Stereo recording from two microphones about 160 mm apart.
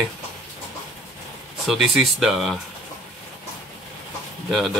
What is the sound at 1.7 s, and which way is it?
Speech, centre (ahead or behind).